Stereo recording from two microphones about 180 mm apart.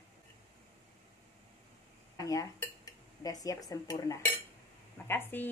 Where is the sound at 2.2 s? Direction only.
20° left (ahead or behind).